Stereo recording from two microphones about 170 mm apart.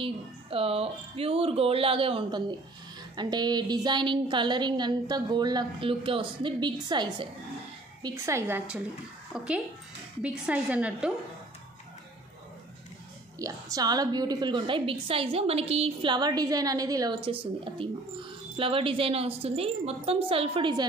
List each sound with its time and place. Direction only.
0.0 s a woman's voice: 35° right (ahead or behind); by 11.1 s 5° right (ahead or behind)
13.4 s a woman's voice: 20° right (ahead or behind)